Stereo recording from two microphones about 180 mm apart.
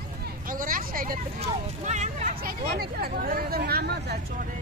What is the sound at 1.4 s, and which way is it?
Speech, 40° right (ahead or behind).